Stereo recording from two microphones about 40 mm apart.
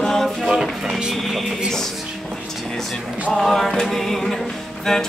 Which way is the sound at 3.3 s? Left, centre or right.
Centre.